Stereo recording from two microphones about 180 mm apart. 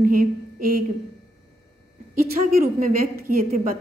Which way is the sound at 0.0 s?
50° right (ahead or behind).